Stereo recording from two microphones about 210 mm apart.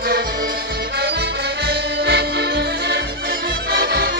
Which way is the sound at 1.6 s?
50° right (ahead or behind).